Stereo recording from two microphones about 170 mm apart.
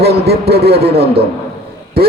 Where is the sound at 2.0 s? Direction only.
65° right (ahead or behind).